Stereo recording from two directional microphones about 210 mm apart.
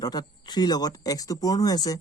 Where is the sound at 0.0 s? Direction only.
20° left (ahead or behind).